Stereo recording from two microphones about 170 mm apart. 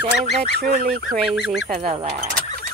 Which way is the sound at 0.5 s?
60° right (ahead or behind).